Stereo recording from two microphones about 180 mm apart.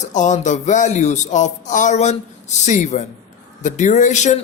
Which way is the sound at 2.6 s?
40° left (ahead or behind).